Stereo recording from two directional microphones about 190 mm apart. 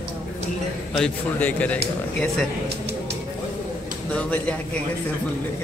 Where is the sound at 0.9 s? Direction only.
5° left (ahead or behind).